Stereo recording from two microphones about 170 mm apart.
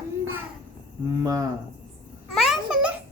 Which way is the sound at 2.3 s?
Centre (ahead or behind).